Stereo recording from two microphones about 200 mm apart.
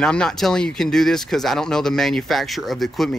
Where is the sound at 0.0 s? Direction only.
5° left (ahead or behind).